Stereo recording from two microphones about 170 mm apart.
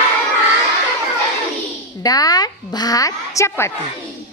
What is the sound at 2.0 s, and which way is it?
A woman's voice, 20° left (ahead or behind).